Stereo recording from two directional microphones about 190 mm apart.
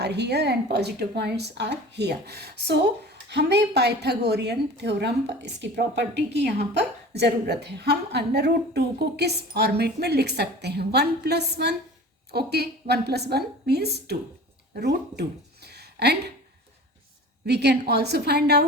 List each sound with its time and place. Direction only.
0.0 s a woman's voice: 60° right (ahead or behind)
17.4 s a woman's voice: 60° right (ahead or behind)